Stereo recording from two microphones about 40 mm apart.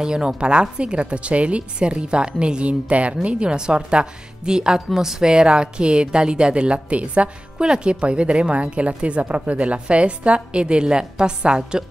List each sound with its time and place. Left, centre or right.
0.0 s a woman's voice: centre
5.3 s a woman's voice: right
7.6 s a woman's voice: right